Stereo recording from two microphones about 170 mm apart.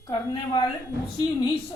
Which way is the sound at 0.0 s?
20° left (ahead or behind).